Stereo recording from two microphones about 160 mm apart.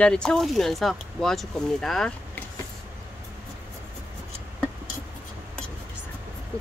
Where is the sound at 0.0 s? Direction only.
5° left (ahead or behind).